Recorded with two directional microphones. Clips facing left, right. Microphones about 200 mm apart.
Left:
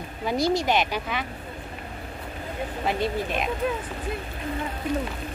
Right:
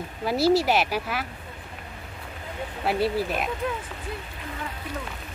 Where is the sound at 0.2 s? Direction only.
5° right (ahead or behind).